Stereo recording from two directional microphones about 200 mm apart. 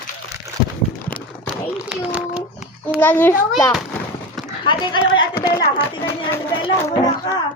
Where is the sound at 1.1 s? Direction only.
5° left (ahead or behind).